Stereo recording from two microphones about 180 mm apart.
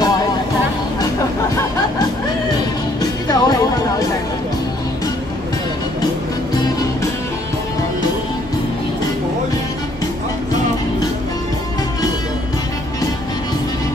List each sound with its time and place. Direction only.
2.5 s music: 20° left (ahead or behind)
6.5 s music: 20° left (ahead or behind)